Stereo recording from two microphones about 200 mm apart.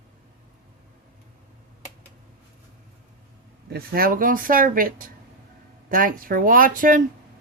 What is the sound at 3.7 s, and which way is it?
Speech, 50° right (ahead or behind).